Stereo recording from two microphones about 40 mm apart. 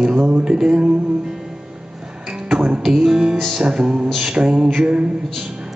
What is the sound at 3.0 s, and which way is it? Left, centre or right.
Music, centre.